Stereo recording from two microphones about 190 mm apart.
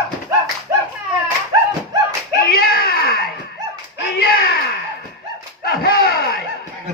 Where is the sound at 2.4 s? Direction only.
55° left (ahead or behind).